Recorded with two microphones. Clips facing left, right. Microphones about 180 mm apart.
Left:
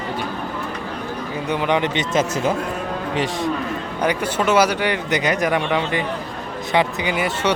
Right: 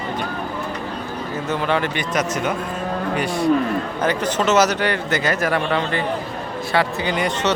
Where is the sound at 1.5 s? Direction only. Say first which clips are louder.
Left 2 dB; 15° left (ahead or behind).